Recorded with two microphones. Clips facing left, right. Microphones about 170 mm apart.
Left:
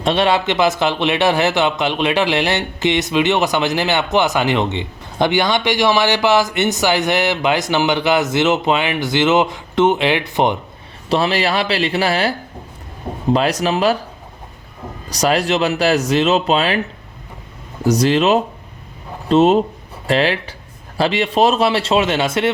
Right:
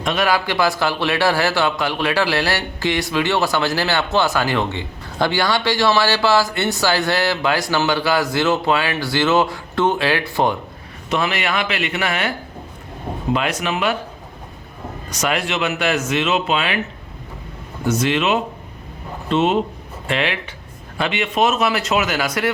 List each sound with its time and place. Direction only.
0.0 s a man's voice: 30° left (ahead or behind)
11.1 s speech: 30° left (ahead or behind)
13.3 s speech: 35° left (ahead or behind)
15.1 s speech: 35° left (ahead or behind)
17.8 s a man's voice: 35° left (ahead or behind)